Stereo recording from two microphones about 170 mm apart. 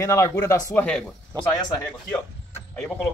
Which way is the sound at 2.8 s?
5° left (ahead or behind).